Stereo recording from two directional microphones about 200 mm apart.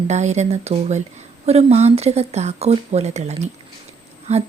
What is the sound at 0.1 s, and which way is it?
Speech, 35° right (ahead or behind).